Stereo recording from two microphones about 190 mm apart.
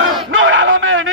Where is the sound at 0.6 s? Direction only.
90° right.